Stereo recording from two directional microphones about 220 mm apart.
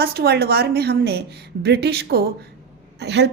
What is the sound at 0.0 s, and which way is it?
A woman's voice, 45° right (ahead or behind).